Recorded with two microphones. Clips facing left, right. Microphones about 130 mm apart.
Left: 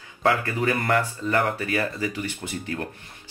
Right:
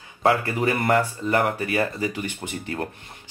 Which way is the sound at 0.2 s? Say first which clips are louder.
Right 2 dB; 30° right (ahead or behind).